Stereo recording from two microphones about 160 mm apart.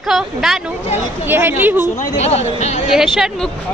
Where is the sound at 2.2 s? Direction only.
40° left (ahead or behind).